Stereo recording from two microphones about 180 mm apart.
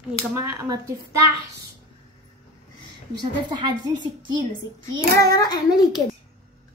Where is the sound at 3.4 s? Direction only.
25° right (ahead or behind).